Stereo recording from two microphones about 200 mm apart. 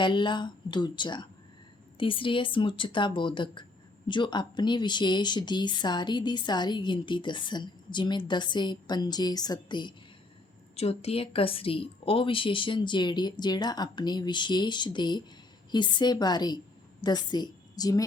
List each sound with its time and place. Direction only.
0.0 s a woman's voice: 25° left (ahead or behind)